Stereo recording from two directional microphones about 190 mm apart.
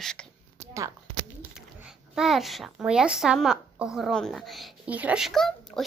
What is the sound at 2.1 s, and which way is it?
A child's voice, centre (ahead or behind).